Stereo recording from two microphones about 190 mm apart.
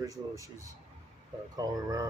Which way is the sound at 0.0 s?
15° right (ahead or behind).